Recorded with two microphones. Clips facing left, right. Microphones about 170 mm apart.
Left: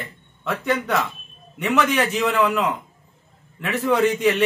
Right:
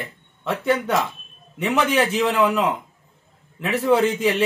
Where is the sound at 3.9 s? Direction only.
30° right (ahead or behind).